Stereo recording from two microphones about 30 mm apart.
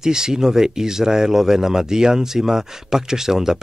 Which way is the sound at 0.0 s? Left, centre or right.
Centre.